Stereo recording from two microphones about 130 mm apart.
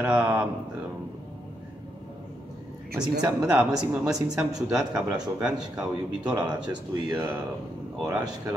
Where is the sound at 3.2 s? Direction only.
5° right (ahead or behind).